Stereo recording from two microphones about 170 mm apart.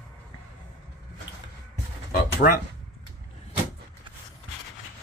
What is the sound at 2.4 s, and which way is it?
Speech, 60° left (ahead or behind).